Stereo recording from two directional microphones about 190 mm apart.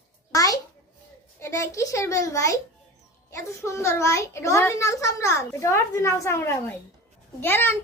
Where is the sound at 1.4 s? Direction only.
15° left (ahead or behind).